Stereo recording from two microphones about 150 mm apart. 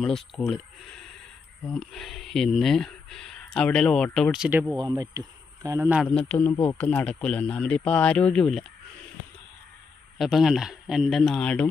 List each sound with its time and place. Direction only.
0.0 s speech: 5° left (ahead or behind)
1.7 s speech: centre (ahead or behind)
4.7 s speech: 25° right (ahead or behind)
6.2 s speech: 10° left (ahead or behind)
10.1 s speech: centre (ahead or behind)